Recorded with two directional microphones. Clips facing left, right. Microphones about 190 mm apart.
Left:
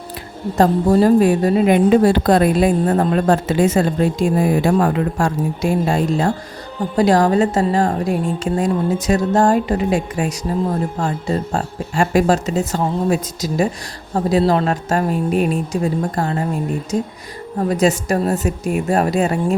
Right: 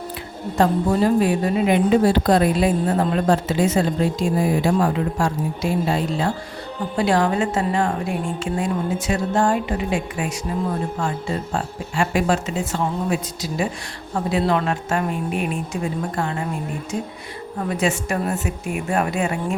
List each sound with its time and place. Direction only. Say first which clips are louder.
0.5 s speech: left 5 dB; 40° left (ahead or behind)